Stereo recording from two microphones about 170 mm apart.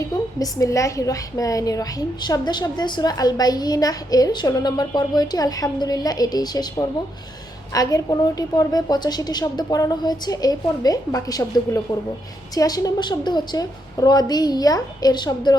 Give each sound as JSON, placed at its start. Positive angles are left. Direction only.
{"t": 0.3, "sound": "a woman's voice", "side_deg": 20}